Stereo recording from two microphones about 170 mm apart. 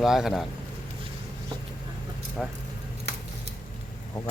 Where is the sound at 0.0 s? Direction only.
Centre (ahead or behind).